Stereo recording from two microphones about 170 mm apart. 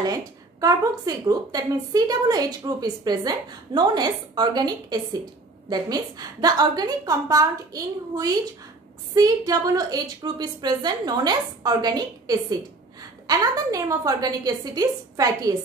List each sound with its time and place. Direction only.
0.0 s a woman's voice: 20° right (ahead or behind)